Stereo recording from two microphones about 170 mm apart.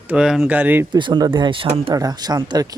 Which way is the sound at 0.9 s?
25° right (ahead or behind).